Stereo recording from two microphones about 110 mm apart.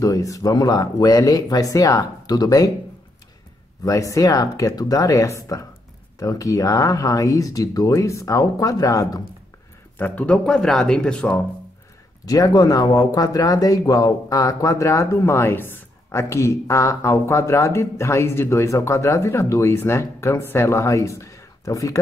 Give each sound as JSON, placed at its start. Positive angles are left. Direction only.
{"t": 0.0, "sound": "speech", "side_deg": 30}
{"t": 3.8, "sound": "speech", "side_deg": 30}
{"t": 9.9, "sound": "speech", "side_deg": 15}
{"t": 12.3, "sound": "speech", "side_deg": 35}